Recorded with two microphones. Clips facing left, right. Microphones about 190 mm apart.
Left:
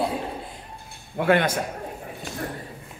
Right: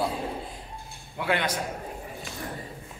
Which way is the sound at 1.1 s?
50° left (ahead or behind).